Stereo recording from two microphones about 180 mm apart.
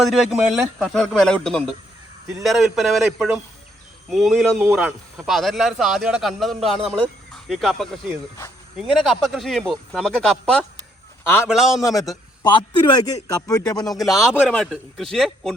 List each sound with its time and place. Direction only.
0.0 s speech: centre (ahead or behind)
4.6 s a man's voice: 10° right (ahead or behind)
5.1 s speech: centre (ahead or behind)
11.8 s a man's voice: 20° left (ahead or behind)
14.3 s speech: 5° right (ahead or behind)